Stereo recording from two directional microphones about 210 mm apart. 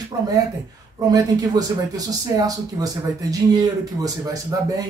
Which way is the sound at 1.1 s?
15° right (ahead or behind).